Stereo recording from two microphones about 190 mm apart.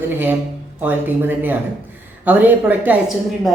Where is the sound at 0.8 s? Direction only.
10° right (ahead or behind).